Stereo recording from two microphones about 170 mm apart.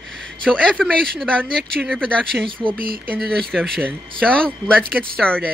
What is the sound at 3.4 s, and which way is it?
Speech, centre (ahead or behind).